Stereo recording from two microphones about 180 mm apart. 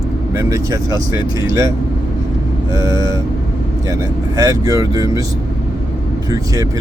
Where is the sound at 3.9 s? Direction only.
20° right (ahead or behind).